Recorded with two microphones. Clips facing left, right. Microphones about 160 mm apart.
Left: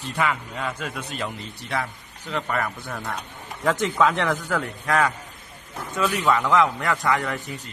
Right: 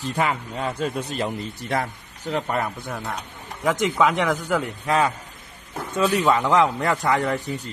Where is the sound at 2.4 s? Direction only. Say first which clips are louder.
Right 1 dB; 20° right (ahead or behind).